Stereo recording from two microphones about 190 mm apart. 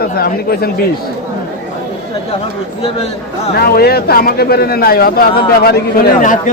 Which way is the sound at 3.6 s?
55° left (ahead or behind).